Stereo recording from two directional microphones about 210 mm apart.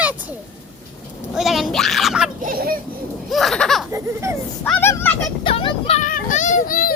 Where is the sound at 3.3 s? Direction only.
Centre (ahead or behind).